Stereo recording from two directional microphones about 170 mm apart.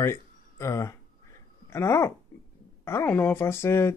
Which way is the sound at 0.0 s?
15° left (ahead or behind).